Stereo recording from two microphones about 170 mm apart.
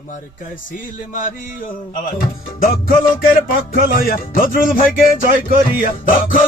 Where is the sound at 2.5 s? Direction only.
55° left (ahead or behind).